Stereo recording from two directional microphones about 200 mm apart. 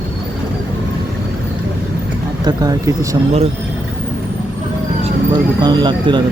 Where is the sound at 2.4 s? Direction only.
20° right (ahead or behind).